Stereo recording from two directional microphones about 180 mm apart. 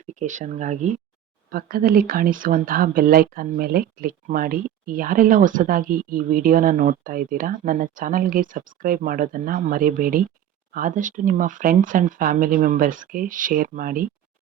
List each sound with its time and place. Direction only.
0.0 s speech: 45° right (ahead or behind)
1.5 s speech: 55° right (ahead or behind)